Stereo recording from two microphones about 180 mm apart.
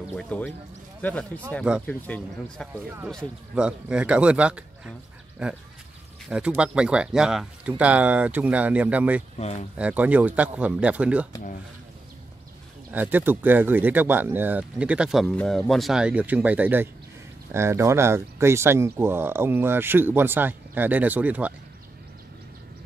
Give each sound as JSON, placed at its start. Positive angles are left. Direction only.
{"t": 0.1, "sound": "speech", "side_deg": 5}
{"t": 6.2, "sound": "speech", "side_deg": -5}
{"t": 9.4, "sound": "speech", "side_deg": 35}
{"t": 9.8, "sound": "speech", "side_deg": -10}
{"t": 12.9, "sound": "speech", "side_deg": -10}